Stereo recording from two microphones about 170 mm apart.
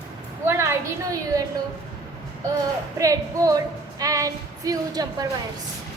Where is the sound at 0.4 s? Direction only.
15° right (ahead or behind).